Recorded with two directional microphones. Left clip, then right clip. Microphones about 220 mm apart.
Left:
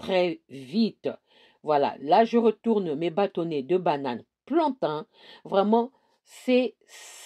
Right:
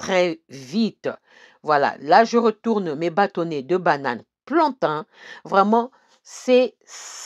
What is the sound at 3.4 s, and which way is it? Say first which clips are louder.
Speech: right 4 dB; 45° right (ahead or behind).